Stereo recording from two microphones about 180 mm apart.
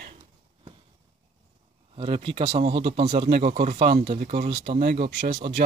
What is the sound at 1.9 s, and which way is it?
Speech, 30° right (ahead or behind).